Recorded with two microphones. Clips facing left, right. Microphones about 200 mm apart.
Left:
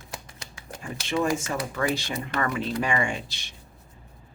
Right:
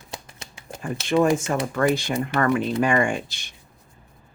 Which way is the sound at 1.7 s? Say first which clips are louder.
Right 7 dB; 50° right (ahead or behind).